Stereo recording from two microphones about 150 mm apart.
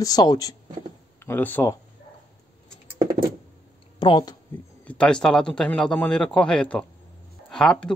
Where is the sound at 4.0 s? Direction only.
30° left (ahead or behind).